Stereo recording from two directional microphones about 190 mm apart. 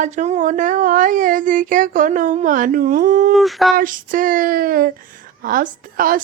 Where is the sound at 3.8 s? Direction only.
45° right (ahead or behind).